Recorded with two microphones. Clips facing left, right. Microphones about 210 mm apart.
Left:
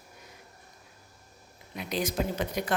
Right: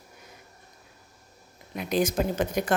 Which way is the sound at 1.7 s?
50° right (ahead or behind).